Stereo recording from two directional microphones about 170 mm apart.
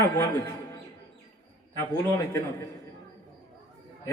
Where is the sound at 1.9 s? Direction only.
15° left (ahead or behind).